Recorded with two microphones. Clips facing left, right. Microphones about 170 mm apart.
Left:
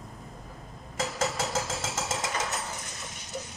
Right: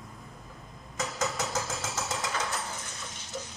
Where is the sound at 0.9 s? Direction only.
30° left (ahead or behind).